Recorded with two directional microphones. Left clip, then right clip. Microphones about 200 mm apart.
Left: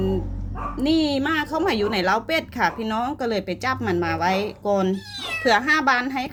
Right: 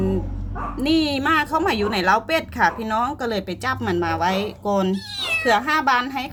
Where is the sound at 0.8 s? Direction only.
5° left (ahead or behind).